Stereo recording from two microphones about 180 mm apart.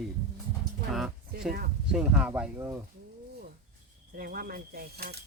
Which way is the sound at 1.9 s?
5° right (ahead or behind).